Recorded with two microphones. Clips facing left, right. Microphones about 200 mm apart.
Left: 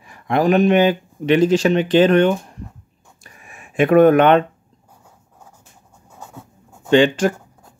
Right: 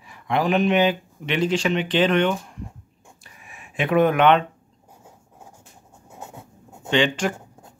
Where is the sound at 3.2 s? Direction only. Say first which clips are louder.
Left 4 dB; 45° left (ahead or behind).